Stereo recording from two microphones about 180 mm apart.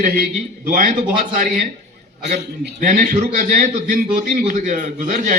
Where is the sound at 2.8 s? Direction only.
45° right (ahead or behind).